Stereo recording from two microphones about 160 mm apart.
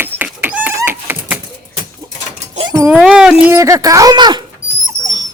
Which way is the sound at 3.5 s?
20° right (ahead or behind).